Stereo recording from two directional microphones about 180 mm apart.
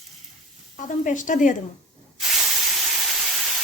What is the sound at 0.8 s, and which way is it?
Speech, 45° left (ahead or behind).